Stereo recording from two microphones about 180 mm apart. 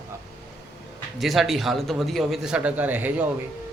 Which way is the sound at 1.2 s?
Centre (ahead or behind).